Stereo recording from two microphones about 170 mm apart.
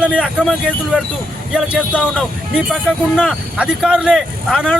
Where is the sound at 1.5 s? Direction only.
5° right (ahead or behind).